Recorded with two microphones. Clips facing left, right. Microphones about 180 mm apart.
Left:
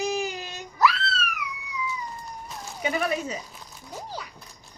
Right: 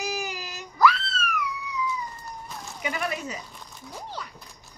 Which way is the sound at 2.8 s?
25° left (ahead or behind).